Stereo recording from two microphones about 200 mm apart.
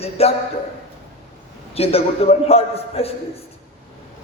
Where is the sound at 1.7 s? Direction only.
30° left (ahead or behind).